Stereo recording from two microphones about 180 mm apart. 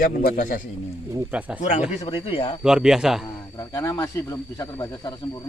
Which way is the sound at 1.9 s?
30° left (ahead or behind).